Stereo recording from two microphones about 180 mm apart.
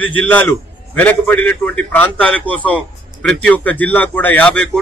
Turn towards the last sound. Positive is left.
turn(degrees=5)  # may be behind; listen again after turning